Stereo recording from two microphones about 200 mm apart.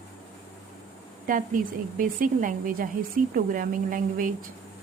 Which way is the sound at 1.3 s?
40° right (ahead or behind).